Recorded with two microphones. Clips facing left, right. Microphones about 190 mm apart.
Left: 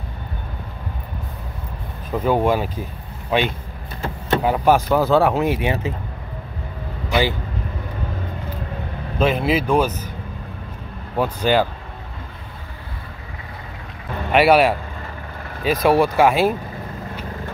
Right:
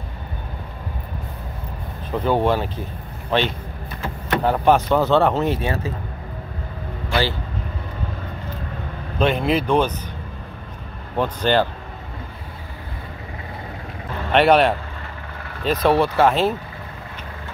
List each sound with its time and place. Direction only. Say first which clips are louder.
2.1 s speech: left 1 dB; 10° left (ahead or behind)
7.1 s vehicle: left 2 dB; 15° left (ahead or behind)
9.2 s speech: even; 5° left (ahead or behind)
11.1 s speech: left 1 dB; 10° left (ahead or behind)
14.3 s speech: left 1 dB; 10° left (ahead or behind)